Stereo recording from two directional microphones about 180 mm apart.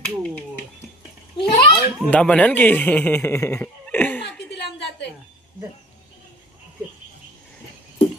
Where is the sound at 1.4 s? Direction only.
25° left (ahead or behind).